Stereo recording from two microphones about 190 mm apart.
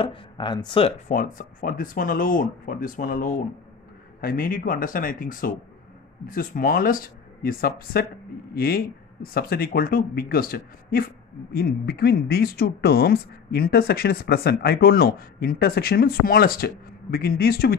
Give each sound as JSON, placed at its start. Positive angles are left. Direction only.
{"t": 0.0, "sound": "speech", "side_deg": 25}
{"t": 1.1, "sound": "speech", "side_deg": 45}